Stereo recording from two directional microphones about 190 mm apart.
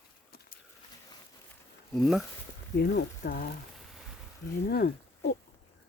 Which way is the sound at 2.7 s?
60° left (ahead or behind).